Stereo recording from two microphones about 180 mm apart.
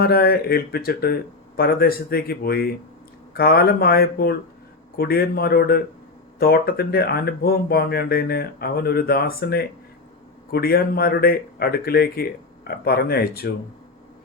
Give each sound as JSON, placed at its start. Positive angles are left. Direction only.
{"t": 0.0, "sound": "speech", "side_deg": 60}